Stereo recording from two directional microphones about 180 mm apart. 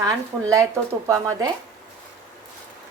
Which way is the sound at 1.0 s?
15° right (ahead or behind).